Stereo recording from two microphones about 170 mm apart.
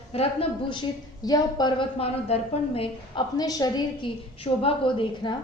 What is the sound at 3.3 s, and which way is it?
A woman's voice, 20° left (ahead or behind).